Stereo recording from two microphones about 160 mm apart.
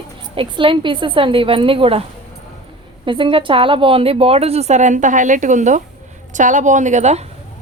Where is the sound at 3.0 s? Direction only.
30° right (ahead or behind).